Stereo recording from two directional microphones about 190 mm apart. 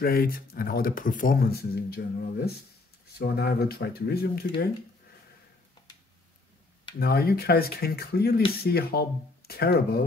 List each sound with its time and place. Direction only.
0.0 s speech: 50° left (ahead or behind)
7.0 s speech: 55° left (ahead or behind)